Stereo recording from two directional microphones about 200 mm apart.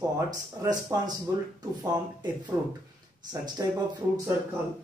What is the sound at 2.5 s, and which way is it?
Speech, 15° right (ahead or behind).